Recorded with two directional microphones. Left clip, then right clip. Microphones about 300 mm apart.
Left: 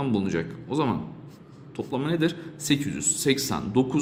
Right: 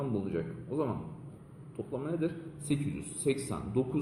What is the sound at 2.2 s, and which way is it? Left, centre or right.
A man's voice, left.